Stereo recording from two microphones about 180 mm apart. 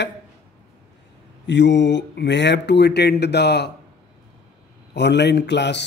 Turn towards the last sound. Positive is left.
turn(degrees=75)  # may be behind; listen again after turning